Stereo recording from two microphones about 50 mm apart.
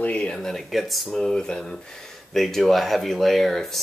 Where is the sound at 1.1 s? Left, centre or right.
Centre.